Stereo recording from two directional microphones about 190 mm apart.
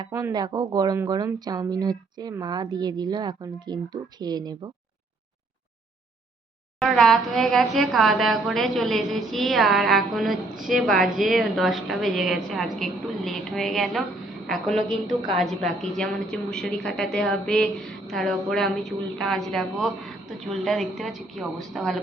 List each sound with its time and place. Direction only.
0.0 s speech: 15° right (ahead or behind)
6.7 s a woman's voice: centre (ahead or behind)